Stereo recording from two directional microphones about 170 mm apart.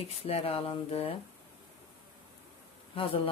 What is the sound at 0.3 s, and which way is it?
Speech, 35° left (ahead or behind).